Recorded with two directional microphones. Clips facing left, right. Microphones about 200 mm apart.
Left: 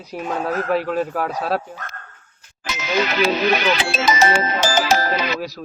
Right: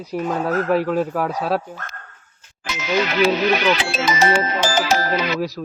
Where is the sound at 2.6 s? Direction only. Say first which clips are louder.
Right 1 dB; 40° left (ahead or behind).